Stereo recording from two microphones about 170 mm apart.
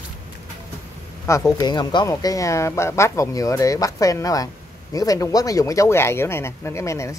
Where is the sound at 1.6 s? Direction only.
25° left (ahead or behind).